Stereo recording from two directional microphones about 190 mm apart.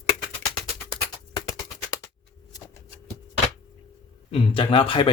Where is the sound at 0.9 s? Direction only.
20° left (ahead or behind).